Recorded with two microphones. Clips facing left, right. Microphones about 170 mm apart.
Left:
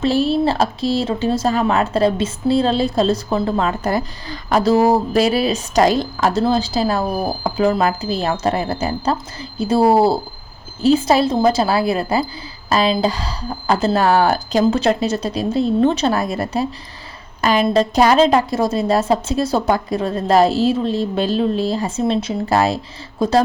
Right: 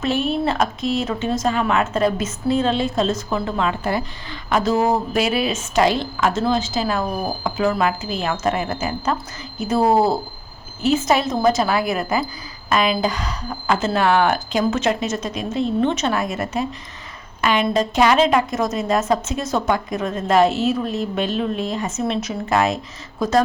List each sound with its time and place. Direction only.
0.0 s speech: 35° left (ahead or behind)